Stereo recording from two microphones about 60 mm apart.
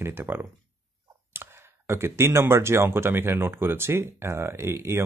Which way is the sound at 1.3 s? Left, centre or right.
Right.